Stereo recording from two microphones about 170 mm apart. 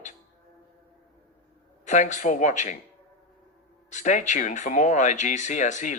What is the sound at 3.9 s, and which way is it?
A man's voice, 45° left (ahead or behind).